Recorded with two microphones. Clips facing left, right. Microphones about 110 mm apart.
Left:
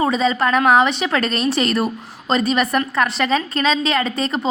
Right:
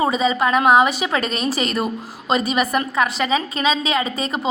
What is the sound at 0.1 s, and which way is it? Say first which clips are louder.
A woman's voice: left 1 dB; 5° right (ahead or behind).